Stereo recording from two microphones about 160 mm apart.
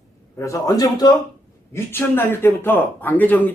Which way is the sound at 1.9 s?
15° left (ahead or behind).